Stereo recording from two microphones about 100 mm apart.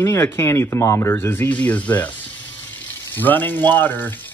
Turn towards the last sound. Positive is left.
turn(degrees=20)  # may be behind; listen again after turning